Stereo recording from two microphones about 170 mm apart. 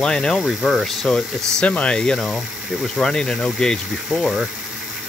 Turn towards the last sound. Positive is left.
turn(degrees=-5)  # may be behind; listen again after turning